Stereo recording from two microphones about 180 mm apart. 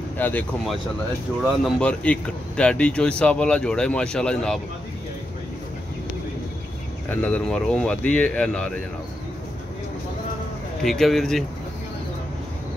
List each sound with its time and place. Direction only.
0.2 s speech: 10° left (ahead or behind)
7.2 s speech: 10° left (ahead or behind)
10.8 s speech: centre (ahead or behind)